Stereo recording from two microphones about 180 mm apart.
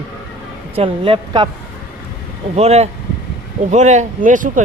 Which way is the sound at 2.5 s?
35° right (ahead or behind).